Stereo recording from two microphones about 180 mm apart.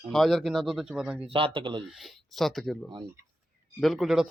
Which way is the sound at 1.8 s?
Centre (ahead or behind).